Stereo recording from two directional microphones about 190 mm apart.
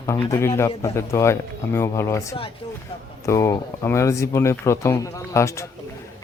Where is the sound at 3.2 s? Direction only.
15° left (ahead or behind).